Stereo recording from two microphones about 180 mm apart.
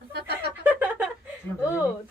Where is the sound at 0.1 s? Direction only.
65° right (ahead or behind).